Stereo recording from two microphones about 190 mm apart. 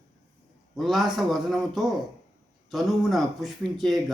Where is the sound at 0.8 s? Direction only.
Centre (ahead or behind).